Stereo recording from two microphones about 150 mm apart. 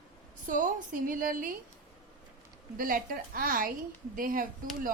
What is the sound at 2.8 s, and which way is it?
A woman's voice, 70° right (ahead or behind).